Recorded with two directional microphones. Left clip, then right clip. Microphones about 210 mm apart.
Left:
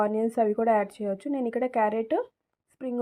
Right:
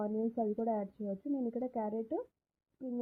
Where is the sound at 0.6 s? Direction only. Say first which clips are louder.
Left 12 dB; 15° left (ahead or behind).